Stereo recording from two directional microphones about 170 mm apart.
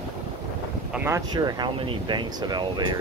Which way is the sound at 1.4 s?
25° right (ahead or behind).